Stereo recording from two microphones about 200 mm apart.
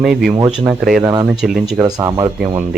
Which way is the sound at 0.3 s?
20° right (ahead or behind).